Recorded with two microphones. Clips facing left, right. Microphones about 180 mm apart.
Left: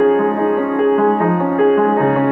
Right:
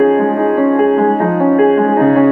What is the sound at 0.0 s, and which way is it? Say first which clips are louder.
Music: right 2 dB; 35° right (ahead or behind).